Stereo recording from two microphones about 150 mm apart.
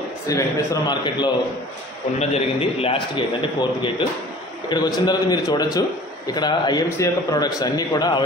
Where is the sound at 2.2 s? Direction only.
40° left (ahead or behind).